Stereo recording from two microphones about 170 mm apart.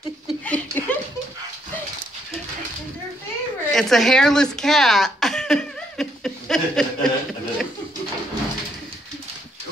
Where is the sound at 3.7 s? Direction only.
Centre (ahead or behind).